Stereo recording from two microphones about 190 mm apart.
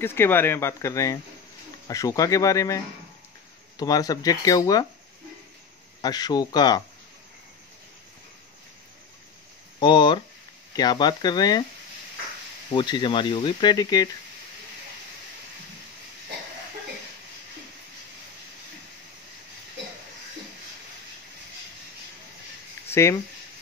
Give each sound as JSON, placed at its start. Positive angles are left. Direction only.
{"t": 0.0, "sound": "speech", "side_deg": 10}
{"t": 5.9, "sound": "speech", "side_deg": 20}
{"t": 9.8, "sound": "speech", "side_deg": 25}
{"t": 12.7, "sound": "speech", "side_deg": 25}
{"t": 22.8, "sound": "speech", "side_deg": 15}